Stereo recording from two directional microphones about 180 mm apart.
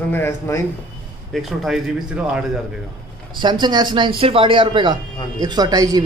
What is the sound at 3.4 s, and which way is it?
A man's voice, 25° right (ahead or behind).